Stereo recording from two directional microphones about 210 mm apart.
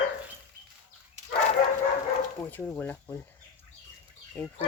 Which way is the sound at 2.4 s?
5° left (ahead or behind).